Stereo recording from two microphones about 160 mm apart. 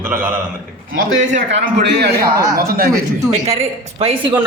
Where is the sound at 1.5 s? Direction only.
90° right.